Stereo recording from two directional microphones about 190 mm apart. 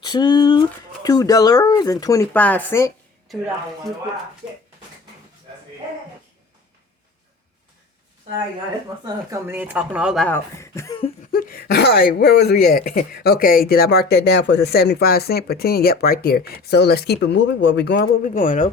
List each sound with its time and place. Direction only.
0.0 s speech: 25° left (ahead or behind)
9.0 s speech: 15° right (ahead or behind)
10.2 s speech: 15° left (ahead or behind)
11.3 s speech: 50° left (ahead or behind)